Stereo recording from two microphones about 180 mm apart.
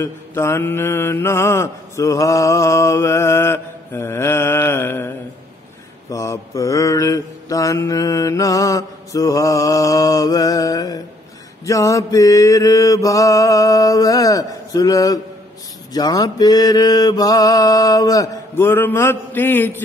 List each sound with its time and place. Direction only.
0.0 s mantra: 15° left (ahead or behind)